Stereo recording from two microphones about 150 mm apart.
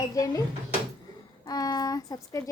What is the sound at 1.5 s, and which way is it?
Speech, 25° left (ahead or behind).